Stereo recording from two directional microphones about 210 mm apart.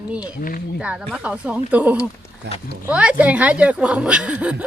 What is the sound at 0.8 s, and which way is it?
Speech, 5° right (ahead or behind).